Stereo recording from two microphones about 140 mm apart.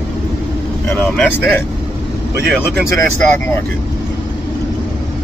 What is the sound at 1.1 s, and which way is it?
Speech, 10° left (ahead or behind).